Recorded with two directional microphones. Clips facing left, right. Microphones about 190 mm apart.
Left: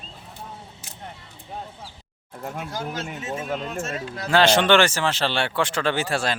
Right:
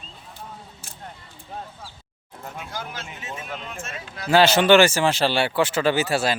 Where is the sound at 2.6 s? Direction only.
40° left (ahead or behind).